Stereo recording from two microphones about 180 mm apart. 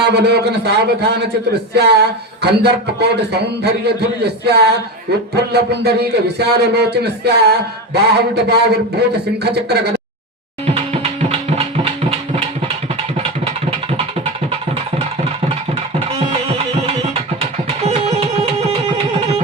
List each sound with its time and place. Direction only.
0.0 s a man's voice: 65° right (ahead or behind)
10.9 s music: 35° right (ahead or behind)
13.4 s a sound: 35° right (ahead or behind)
17.8 s music: 35° right (ahead or behind)